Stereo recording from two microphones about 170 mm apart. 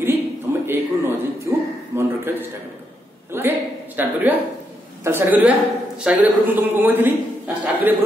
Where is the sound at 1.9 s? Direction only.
15° right (ahead or behind).